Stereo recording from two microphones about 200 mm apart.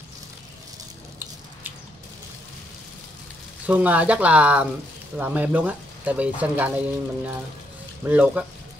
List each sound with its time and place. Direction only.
3.6 s speech: 5° right (ahead or behind)